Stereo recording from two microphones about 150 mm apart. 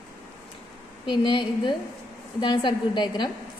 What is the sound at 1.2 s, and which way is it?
A woman's voice, 30° left (ahead or behind).